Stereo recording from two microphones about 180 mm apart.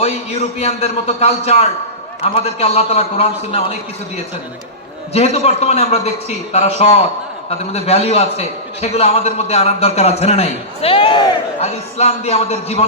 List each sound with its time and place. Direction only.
0.0 s a man's voice: 35° left (ahead or behind)
5.1 s a man's voice: 35° left (ahead or behind)